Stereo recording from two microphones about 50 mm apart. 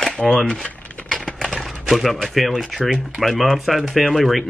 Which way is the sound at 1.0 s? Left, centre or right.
Centre.